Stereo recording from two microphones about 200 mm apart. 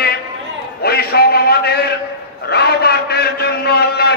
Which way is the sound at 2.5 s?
55° left (ahead or behind).